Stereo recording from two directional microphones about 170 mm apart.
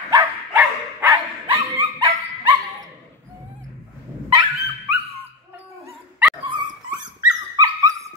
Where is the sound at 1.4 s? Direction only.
30° right (ahead or behind).